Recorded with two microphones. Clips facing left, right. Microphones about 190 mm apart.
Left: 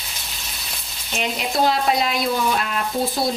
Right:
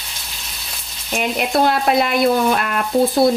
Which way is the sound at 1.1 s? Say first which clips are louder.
Right 5 dB; 55° right (ahead or behind).